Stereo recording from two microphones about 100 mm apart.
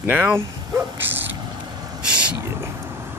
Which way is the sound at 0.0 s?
20° right (ahead or behind).